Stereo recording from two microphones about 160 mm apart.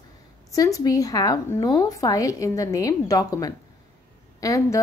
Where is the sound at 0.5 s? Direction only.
20° left (ahead or behind).